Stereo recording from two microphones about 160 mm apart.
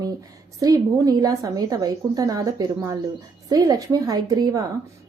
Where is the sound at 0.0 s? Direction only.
20° right (ahead or behind).